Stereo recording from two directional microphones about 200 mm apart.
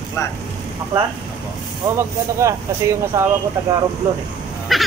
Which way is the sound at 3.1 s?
15° right (ahead or behind).